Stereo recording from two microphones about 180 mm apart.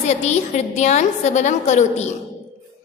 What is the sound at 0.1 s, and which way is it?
A woman's voice, 40° left (ahead or behind).